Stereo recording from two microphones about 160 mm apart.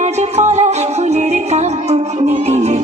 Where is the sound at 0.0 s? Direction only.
45° right (ahead or behind).